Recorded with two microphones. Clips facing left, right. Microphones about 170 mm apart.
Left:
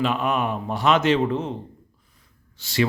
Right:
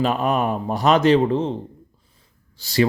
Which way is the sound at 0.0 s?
40° right (ahead or behind).